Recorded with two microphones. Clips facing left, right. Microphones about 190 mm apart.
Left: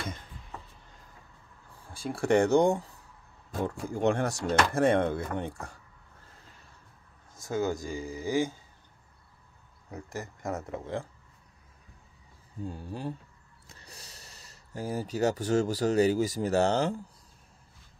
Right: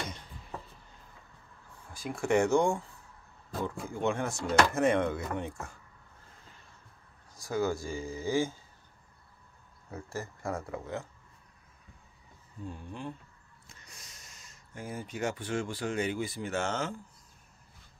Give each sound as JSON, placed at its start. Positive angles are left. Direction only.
{"t": 1.9, "sound": "speech", "side_deg": 30}
{"t": 7.3, "sound": "speech", "side_deg": 25}
{"t": 9.8, "sound": "speech", "side_deg": 15}
{"t": 12.6, "sound": "speech", "side_deg": 35}